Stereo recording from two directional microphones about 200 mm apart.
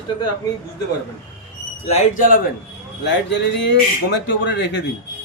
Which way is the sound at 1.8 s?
35° left (ahead or behind).